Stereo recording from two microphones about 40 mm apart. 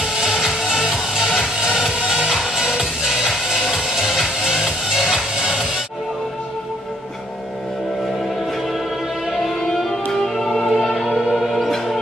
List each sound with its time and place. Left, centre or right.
0.0 s music: centre
10.1 s music: centre
11.1 s music: centre
11.3 s music: centre